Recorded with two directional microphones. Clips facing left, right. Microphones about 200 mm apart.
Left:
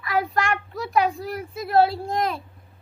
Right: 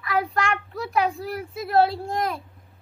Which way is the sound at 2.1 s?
25° left (ahead or behind).